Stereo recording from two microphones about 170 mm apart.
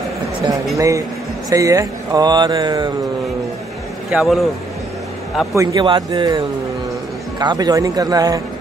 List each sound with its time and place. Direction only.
0.7 s speech: 20° right (ahead or behind)
4.1 s a man's voice: centre (ahead or behind)
5.5 s speech: 20° right (ahead or behind)